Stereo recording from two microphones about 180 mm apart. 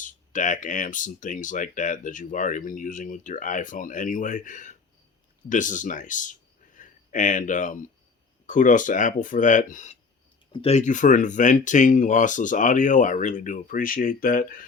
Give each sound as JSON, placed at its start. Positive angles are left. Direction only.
{"t": 0.0, "sound": "speech", "side_deg": 45}